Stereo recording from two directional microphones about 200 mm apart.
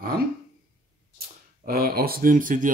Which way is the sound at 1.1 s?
50° right (ahead or behind).